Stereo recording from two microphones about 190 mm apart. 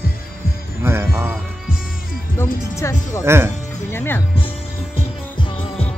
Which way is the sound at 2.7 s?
15° left (ahead or behind).